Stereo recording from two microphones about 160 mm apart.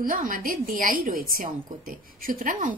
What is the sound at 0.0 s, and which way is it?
A woman's voice, 60° right (ahead or behind).